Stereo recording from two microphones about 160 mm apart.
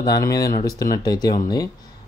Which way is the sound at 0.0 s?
25° left (ahead or behind).